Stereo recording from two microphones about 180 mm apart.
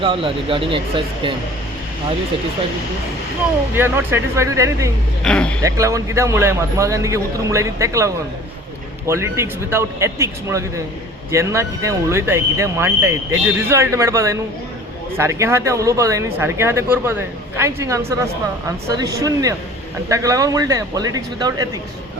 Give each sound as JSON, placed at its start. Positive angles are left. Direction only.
{"t": 0.0, "sound": "speech", "side_deg": -30}
{"t": 3.8, "sound": "a man's voice", "side_deg": -10}
{"t": 5.2, "sound": "speech", "side_deg": 5}
{"t": 5.6, "sound": "a man's voice", "side_deg": -15}